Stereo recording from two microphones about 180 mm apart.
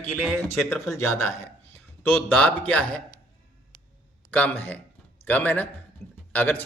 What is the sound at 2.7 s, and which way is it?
Speech, 10° left (ahead or behind).